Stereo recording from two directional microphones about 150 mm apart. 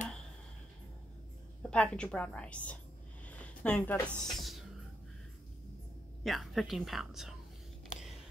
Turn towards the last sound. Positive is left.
turn(degrees=0)  # may be behind; listen again after turning